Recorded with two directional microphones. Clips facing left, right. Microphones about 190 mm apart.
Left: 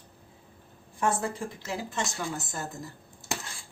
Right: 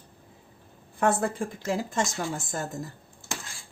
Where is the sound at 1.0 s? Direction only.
55° right (ahead or behind).